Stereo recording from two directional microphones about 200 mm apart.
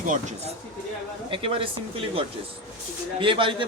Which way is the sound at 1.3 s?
25° right (ahead or behind).